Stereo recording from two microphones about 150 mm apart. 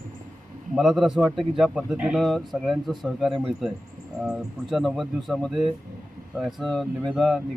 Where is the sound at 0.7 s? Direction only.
Centre (ahead or behind).